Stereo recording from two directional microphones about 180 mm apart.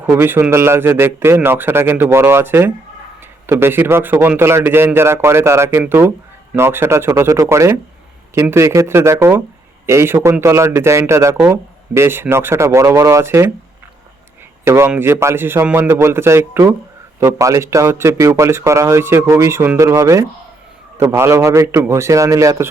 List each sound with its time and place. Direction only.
0.0 s a man's voice: 10° right (ahead or behind)
14.6 s a man's voice: 15° right (ahead or behind)